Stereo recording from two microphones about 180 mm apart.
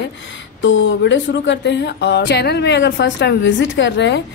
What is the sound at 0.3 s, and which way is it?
A woman's voice, 90° left.